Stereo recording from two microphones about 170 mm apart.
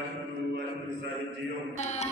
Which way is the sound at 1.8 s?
40° left (ahead or behind).